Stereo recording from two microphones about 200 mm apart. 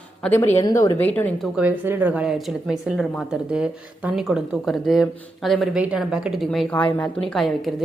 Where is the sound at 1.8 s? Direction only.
10° right (ahead or behind).